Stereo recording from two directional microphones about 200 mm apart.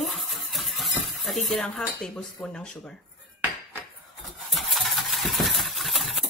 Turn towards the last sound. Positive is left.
turn(degrees=0)  # may be behind; listen again after turning